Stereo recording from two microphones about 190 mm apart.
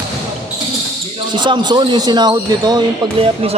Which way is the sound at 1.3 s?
25° right (ahead or behind).